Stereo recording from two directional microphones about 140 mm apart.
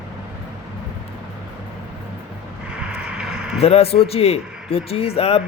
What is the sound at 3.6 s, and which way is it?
Speech, 45° left (ahead or behind).